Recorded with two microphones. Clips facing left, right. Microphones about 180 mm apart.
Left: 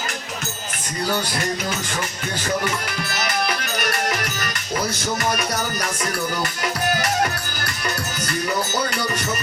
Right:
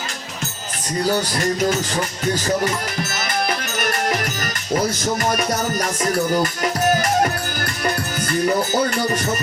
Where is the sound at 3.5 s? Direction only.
45° right (ahead or behind).